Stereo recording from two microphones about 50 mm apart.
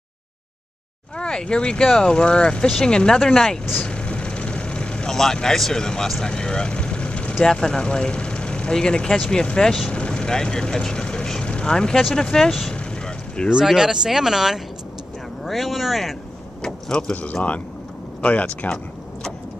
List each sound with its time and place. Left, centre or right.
1.1 s speech: centre
3.8 s vehicle: left
5.1 s speech: centre
12.7 s vehicle: centre
13.7 s speech: centre
17.1 s speech: left